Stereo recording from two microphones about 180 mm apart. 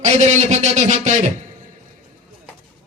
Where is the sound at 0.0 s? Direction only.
40° right (ahead or behind).